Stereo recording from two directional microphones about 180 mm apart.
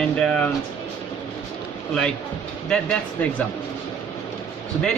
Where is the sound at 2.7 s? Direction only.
5° left (ahead or behind).